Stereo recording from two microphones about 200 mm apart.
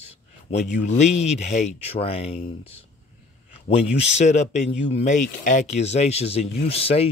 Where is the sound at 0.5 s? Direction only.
35° left (ahead or behind).